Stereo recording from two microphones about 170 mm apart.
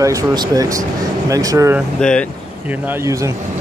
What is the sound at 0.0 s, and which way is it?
Speech, 20° right (ahead or behind).